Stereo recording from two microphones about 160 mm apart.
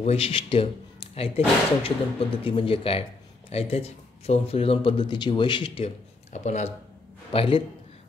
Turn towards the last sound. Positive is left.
turn(degrees=30)  # may be behind; listen again after turning